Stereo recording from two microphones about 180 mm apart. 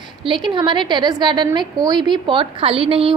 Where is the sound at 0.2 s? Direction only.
25° right (ahead or behind).